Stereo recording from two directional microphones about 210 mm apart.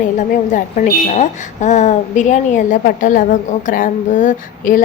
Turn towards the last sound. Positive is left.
turn(degrees=40)  # may be behind; listen again after turning